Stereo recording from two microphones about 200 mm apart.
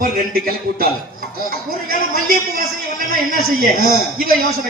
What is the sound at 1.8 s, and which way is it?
A man's voice, 45° right (ahead or behind).